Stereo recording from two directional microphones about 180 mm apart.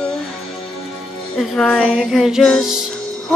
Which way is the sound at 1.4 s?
Centre (ahead or behind).